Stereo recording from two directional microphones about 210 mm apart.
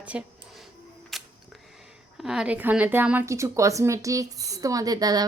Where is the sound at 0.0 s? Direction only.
5° right (ahead or behind).